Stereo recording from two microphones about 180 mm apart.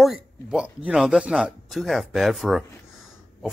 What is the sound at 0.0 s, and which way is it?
Speech, 5° right (ahead or behind).